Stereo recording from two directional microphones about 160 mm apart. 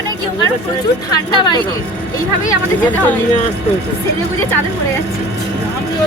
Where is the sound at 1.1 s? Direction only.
25° left (ahead or behind).